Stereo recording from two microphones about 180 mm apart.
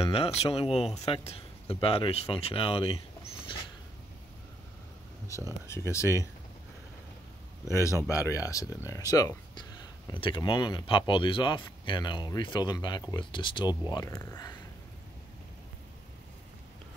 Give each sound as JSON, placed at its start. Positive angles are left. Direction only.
{"t": 0.0, "sound": "speech", "side_deg": 35}
{"t": 5.7, "sound": "speech", "side_deg": 15}
{"t": 7.7, "sound": "speech", "side_deg": 15}